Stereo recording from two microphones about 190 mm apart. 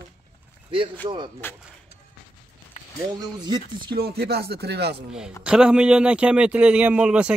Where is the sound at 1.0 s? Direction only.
25° right (ahead or behind).